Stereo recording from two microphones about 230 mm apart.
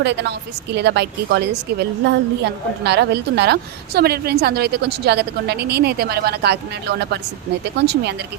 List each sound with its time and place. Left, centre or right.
0.0 s a woman's voice: right